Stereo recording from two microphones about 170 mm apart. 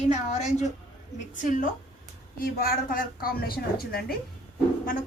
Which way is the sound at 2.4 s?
60° left (ahead or behind).